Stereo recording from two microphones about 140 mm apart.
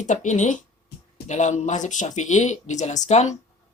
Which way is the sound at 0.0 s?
60° left (ahead or behind).